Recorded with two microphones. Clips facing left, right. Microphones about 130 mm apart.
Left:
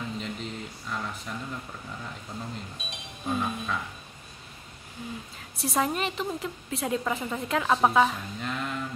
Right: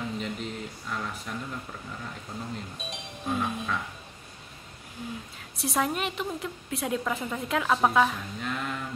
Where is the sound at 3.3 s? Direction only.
Centre (ahead or behind).